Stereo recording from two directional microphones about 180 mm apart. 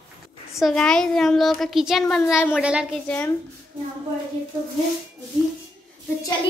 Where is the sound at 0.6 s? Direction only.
Centre (ahead or behind).